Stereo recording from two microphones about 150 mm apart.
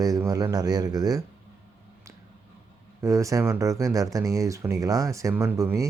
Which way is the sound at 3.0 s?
20° right (ahead or behind).